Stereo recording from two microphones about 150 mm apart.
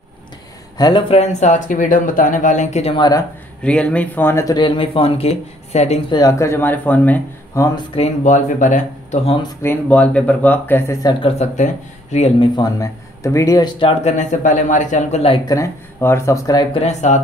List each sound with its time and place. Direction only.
0.7 s speech: 25° left (ahead or behind)
1.1 s speech: 50° left (ahead or behind)
2.9 s speech: 30° left (ahead or behind)
3.6 s speech: 10° left (ahead or behind)
4.6 s speech: 35° left (ahead or behind)
6.1 s speech: 20° left (ahead or behind)
7.9 s speech: 50° left (ahead or behind)
9.6 s speech: 10° left (ahead or behind)
11.2 s speech: 50° left (ahead or behind)
12.4 s speech: 25° left (ahead or behind)
14.1 s speech: 55° left (ahead or behind)
15.4 s speech: 20° left (ahead or behind)
16.7 s speech: 50° left (ahead or behind)